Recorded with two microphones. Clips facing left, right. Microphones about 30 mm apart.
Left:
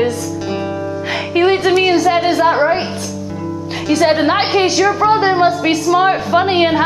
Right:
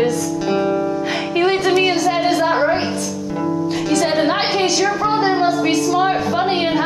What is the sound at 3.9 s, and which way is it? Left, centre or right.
A woman's voice, centre.